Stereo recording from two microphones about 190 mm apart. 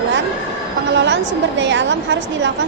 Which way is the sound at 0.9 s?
70° right (ahead or behind).